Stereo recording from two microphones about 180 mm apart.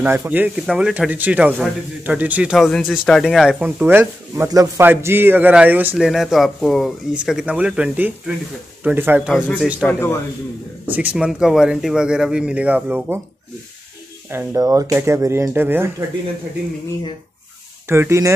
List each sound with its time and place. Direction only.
0.0 s speech: 10° right (ahead or behind)
9.8 s speech: 10° left (ahead or behind)
10.9 s speech: 10° right (ahead or behind)
14.3 s speech: 15° right (ahead or behind)
17.8 s speech: 15° right (ahead or behind)